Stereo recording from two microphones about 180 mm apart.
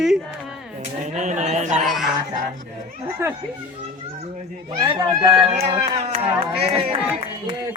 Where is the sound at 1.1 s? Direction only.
40° right (ahead or behind).